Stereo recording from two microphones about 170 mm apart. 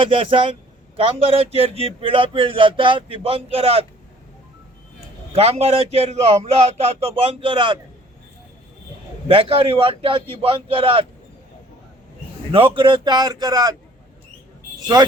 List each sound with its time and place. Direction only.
0.0 s speech: 30° right (ahead or behind)
5.3 s speech: 35° right (ahead or behind)
9.2 s speech: 30° right (ahead or behind)
12.5 s speech: 35° right (ahead or behind)